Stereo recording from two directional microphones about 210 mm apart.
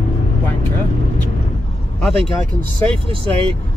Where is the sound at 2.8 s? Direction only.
25° right (ahead or behind).